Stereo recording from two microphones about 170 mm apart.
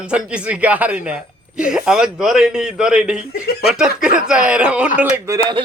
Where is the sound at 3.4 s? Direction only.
65° left (ahead or behind).